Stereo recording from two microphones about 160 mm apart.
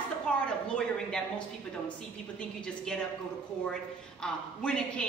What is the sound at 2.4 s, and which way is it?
A man's voice, 5° left (ahead or behind).